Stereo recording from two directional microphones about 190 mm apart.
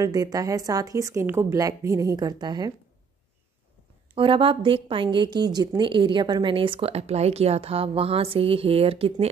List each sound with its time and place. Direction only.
0.0 s speech: 20° right (ahead or behind)
4.1 s a woman's voice: 25° right (ahead or behind)